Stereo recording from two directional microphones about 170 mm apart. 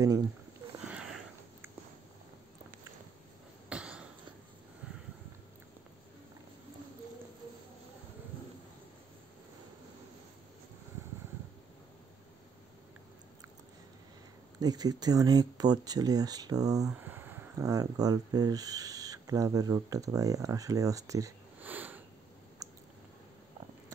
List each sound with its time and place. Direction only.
0.8 s sniff: 5° right (ahead or behind)
3.6 s a sound: 5° right (ahead or behind)
14.6 s speech: 20° right (ahead or behind)
21.5 s sniff: 10° right (ahead or behind)